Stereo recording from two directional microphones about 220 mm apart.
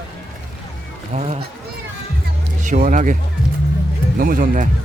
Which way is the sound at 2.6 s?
35° right (ahead or behind).